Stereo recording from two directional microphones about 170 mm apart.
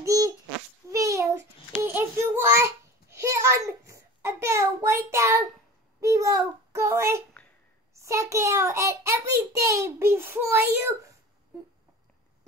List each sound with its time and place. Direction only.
0.0 s babbling: 20° right (ahead or behind)
0.8 s child singing: 20° right (ahead or behind)
5.9 s a sound: 20° right (ahead or behind)
7.9 s child singing: 15° right (ahead or behind)